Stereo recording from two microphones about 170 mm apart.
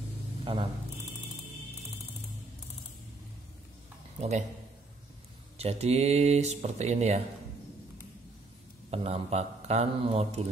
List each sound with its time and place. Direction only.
0.5 s speech: 30° right (ahead or behind)
4.2 s a man's voice: 40° right (ahead or behind)
5.6 s speech: 40° right (ahead or behind)
8.9 s speech: 35° right (ahead or behind)